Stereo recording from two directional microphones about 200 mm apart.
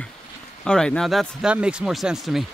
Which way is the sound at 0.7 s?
5° left (ahead or behind).